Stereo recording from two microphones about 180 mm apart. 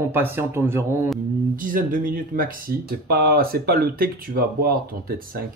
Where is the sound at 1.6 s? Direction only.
50° right (ahead or behind).